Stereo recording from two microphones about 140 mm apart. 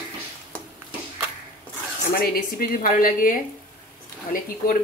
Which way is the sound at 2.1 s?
90° left.